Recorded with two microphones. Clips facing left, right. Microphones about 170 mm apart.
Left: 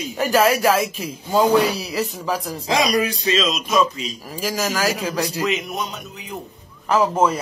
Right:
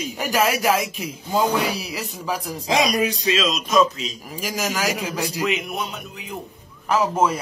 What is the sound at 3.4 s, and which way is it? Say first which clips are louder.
Speech: right 1 dB; centre (ahead or behind).